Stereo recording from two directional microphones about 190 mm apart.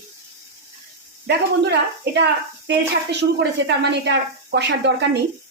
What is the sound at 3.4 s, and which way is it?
A woman's voice, 65° right (ahead or behind).